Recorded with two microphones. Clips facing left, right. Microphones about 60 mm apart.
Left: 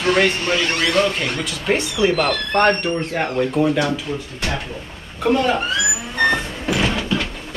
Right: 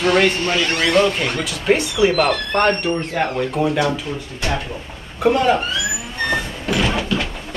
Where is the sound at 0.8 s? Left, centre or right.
Right.